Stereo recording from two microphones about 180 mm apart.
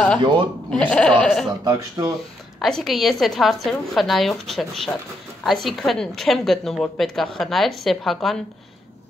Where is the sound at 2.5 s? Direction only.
Centre (ahead or behind).